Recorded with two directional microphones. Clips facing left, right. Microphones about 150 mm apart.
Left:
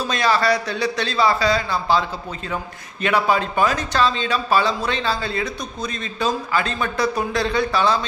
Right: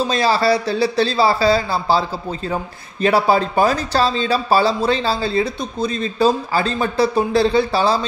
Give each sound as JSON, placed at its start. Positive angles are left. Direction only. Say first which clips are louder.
{"t": 0.0, "sound": "speech", "louder": "right 3 dB", "side_deg": -30}